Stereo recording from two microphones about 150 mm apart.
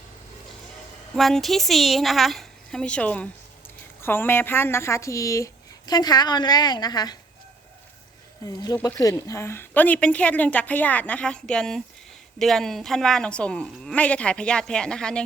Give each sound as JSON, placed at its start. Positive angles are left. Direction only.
{"t": 1.1, "sound": "speech", "side_deg": 0}
{"t": 8.4, "sound": "a woman's voice", "side_deg": 25}